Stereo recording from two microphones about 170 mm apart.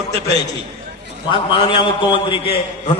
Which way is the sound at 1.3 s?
30° left (ahead or behind).